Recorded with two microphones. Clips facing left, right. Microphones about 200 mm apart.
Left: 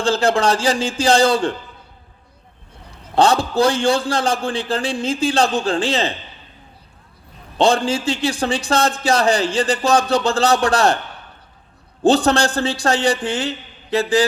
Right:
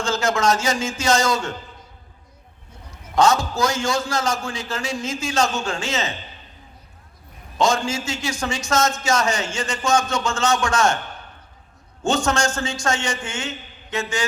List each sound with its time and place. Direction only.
0.0 s speech: 30° left (ahead or behind)
2.9 s speech: 30° left (ahead or behind)
7.6 s speech: 30° left (ahead or behind)
12.0 s speech: 35° left (ahead or behind)